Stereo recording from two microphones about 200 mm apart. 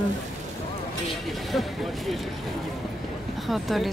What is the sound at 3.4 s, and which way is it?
Speech, centre (ahead or behind).